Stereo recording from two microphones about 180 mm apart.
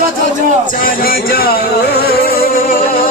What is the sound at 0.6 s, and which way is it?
Music, 50° left (ahead or behind).